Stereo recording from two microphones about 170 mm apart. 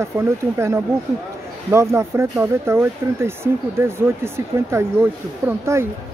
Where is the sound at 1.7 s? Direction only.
15° right (ahead or behind).